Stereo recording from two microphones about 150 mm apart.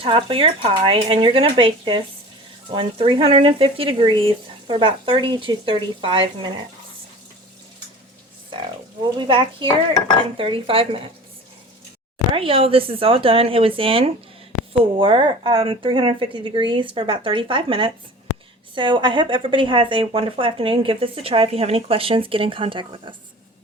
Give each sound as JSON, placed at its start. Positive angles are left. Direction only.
{"t": 0.0, "sound": "speech", "side_deg": -35}
{"t": 9.1, "sound": "speech", "side_deg": -30}
{"t": 12.3, "sound": "speech", "side_deg": -35}